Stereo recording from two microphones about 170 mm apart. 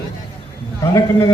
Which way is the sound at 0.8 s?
20° left (ahead or behind).